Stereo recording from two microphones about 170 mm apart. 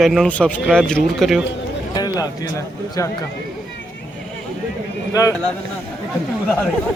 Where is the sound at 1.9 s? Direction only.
25° left (ahead or behind).